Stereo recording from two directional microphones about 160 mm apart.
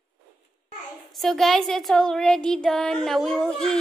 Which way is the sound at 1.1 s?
Centre (ahead or behind).